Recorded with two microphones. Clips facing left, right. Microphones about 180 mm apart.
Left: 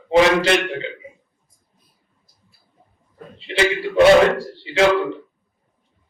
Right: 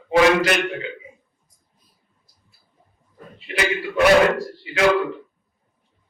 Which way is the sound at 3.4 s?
30° left (ahead or behind).